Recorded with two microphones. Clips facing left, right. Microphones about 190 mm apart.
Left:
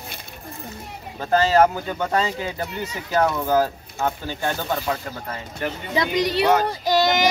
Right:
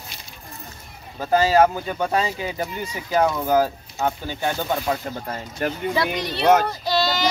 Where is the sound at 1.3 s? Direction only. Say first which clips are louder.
Even; 10° right (ahead or behind).